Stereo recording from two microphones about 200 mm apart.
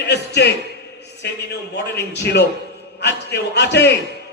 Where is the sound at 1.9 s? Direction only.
55° left (ahead or behind).